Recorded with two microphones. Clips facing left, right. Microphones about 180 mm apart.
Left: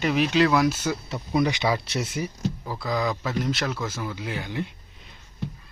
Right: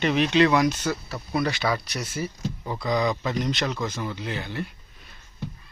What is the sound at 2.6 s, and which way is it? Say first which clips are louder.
Speech: right 4 dB; centre (ahead or behind).